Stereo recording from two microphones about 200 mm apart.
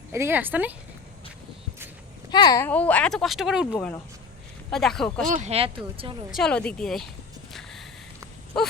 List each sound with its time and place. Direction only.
0.1 s speech: 10° right (ahead or behind)
2.3 s speech: 20° left (ahead or behind); by 5.3 s 5° left (ahead or behind)
5.3 s speech: 35° right (ahead or behind)
6.3 s speech: 5° left (ahead or behind)
7.5 s a sound: centre (ahead or behind)
8.5 s speech: centre (ahead or behind)